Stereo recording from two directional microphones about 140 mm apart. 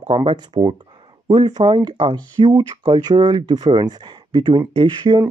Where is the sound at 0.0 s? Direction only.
45° right (ahead or behind).